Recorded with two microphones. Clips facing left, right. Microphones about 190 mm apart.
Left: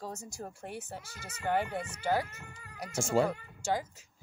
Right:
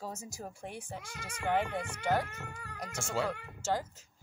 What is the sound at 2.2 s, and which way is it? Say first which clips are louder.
Speech: right 4 dB; 75° right (ahead or behind).